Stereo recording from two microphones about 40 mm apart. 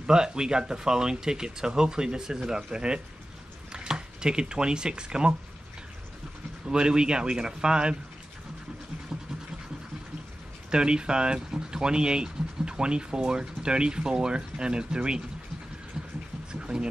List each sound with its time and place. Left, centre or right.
0.0 s speech: centre
6.6 s speech: right
10.7 s speech: right
16.5 s a sound: centre